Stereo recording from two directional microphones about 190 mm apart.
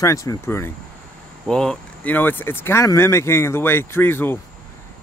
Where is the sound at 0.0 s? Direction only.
15° left (ahead or behind).